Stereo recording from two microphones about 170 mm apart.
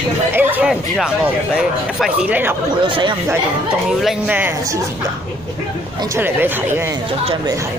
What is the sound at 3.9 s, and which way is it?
Speech, 5° right (ahead or behind).